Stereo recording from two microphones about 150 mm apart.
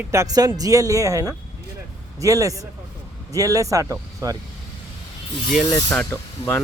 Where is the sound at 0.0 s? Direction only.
20° right (ahead or behind).